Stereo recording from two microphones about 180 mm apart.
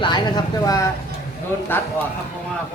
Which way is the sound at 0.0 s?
25° left (ahead or behind).